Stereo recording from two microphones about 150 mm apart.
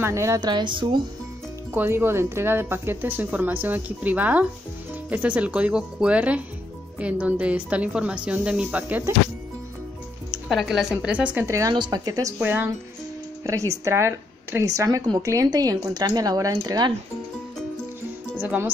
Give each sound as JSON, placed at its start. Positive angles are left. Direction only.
{"t": 0.0, "sound": "speech", "side_deg": -20}
{"t": 1.7, "sound": "a woman's voice", "side_deg": -15}
{"t": 10.5, "sound": "a woman's voice", "side_deg": 0}
{"t": 12.4, "sound": "a woman's voice", "side_deg": -15}
{"t": 18.4, "sound": "a woman's voice", "side_deg": -10}